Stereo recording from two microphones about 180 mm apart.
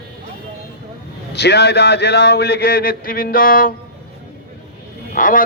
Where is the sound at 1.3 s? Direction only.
65° left (ahead or behind); by 3.7 s 50° left (ahead or behind).